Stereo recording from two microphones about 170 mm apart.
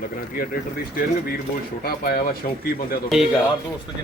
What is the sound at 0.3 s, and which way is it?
A man's voice, 60° left (ahead or behind).